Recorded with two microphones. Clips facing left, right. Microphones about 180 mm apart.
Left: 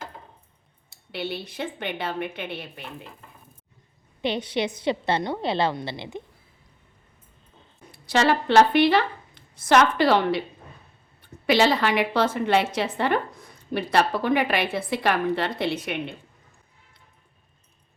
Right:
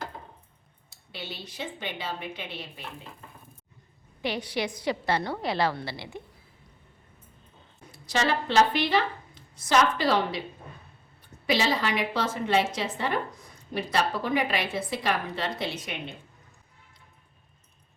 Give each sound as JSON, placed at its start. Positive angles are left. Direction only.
{"t": 0.9, "sound": "a woman's voice", "side_deg": 60}
{"t": 4.2, "sound": "a woman's voice", "side_deg": 25}
{"t": 8.0, "sound": "a woman's voice", "side_deg": 60}